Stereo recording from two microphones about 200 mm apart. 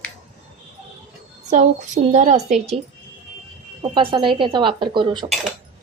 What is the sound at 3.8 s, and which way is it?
Speech, 25° right (ahead or behind).